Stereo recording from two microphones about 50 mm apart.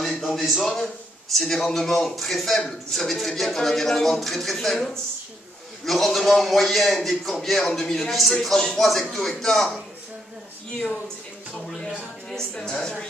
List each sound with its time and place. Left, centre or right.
0.0 s a sound: centre
1.3 s speech: centre
10.7 s speech: centre
12.3 s speech: centre